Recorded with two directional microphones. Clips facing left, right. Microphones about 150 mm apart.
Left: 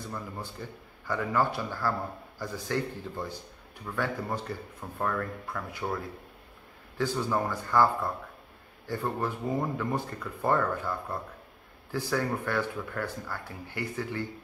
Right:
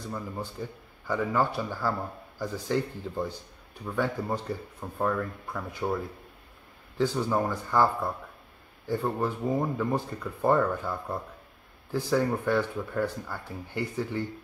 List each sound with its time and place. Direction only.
0.0 s speech: 15° right (ahead or behind)
7.0 s speech: 15° right (ahead or behind)